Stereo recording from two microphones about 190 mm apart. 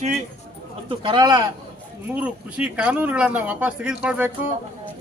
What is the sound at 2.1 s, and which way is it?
Speech, 5° right (ahead or behind).